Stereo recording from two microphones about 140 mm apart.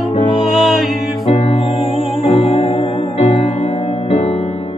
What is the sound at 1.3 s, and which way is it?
Music, 50° left (ahead or behind).